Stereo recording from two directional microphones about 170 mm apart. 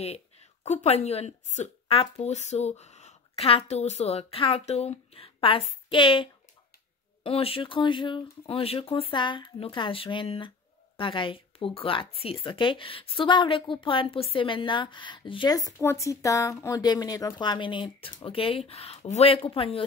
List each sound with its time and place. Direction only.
0.7 s a woman's voice: 40° left (ahead or behind)
7.2 s a woman's voice: 35° left (ahead or behind)